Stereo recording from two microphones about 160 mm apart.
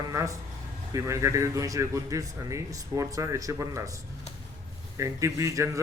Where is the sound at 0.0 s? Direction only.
20° right (ahead or behind).